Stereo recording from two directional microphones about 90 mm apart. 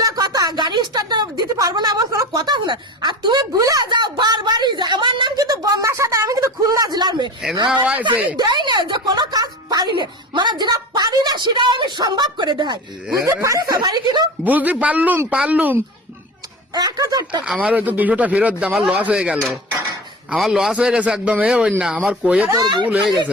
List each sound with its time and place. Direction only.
0.0 s a sound: 45° right (ahead or behind)
3.6 s a woman's voice: 40° right (ahead or behind)
3.8 s a woman's voice: 55° right (ahead or behind)
5.4 s speech: 45° right (ahead or behind)
8.1 s speech: 20° right (ahead or behind)
8.4 s a woman's voice: 50° right (ahead or behind)
13.2 s a woman's voice: 35° right (ahead or behind)
14.4 s speech: 20° right (ahead or behind)
16.7 s a woman's voice: 50° right (ahead or behind)
17.4 s speech: 10° right (ahead or behind)
22.4 s a woman's voice: 45° right (ahead or behind)